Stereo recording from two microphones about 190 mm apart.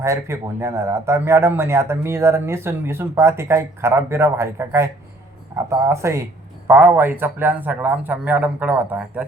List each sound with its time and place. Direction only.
0.0 s a man's voice: 15° right (ahead or behind)
5.9 s a man's voice: 15° right (ahead or behind)